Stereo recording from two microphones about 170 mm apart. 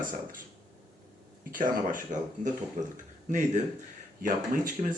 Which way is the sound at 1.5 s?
50° right (ahead or behind).